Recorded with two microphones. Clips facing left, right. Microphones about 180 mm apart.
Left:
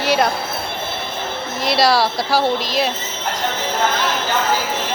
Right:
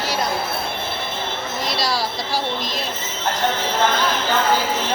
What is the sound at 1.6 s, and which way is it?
Speech, 70° left (ahead or behind).